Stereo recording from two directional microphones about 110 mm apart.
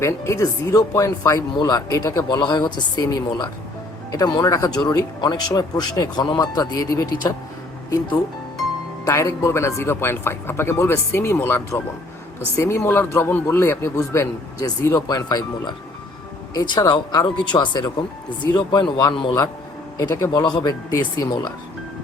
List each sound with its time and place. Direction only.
0.0 s a man's voice: 25° left (ahead or behind)
20.0 s speech: 30° left (ahead or behind)